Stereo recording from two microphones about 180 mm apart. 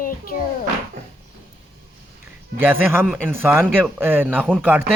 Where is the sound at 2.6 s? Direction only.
10° right (ahead or behind).